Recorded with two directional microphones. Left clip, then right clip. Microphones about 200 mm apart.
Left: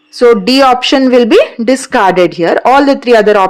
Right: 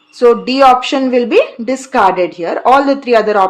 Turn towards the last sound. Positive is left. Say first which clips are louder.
# left 4 dB
turn(degrees=35)  # may be behind; listen again after turning